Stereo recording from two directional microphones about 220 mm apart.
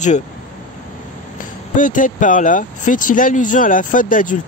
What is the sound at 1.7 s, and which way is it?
Speech, 35° left (ahead or behind).